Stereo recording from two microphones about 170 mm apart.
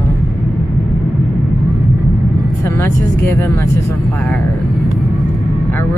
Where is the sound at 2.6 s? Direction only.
15° left (ahead or behind).